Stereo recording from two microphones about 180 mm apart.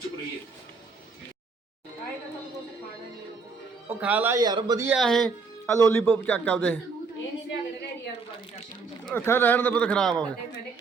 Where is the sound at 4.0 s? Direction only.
10° right (ahead or behind).